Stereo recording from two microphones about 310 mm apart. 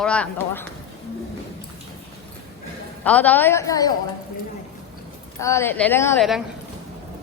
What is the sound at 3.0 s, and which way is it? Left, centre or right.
Speech, centre.